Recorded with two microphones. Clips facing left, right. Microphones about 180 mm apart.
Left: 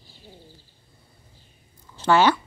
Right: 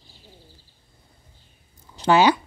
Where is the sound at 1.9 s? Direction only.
15° right (ahead or behind).